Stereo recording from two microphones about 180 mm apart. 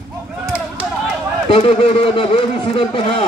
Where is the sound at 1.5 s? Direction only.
30° left (ahead or behind).